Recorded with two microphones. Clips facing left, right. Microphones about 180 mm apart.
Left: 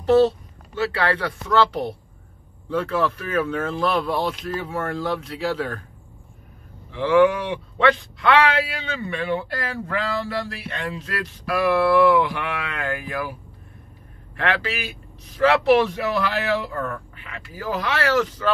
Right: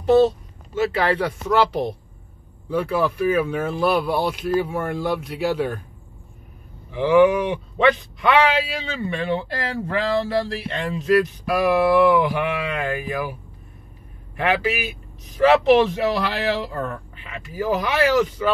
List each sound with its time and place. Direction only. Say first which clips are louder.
0.0 s speech: right 1 dB; 15° right (ahead or behind)
2.7 s speech: right 1 dB; 10° right (ahead or behind)
6.9 s speech: right 2 dB; 15° right (ahead or behind)
14.3 s speech: right 3 dB; 15° right (ahead or behind)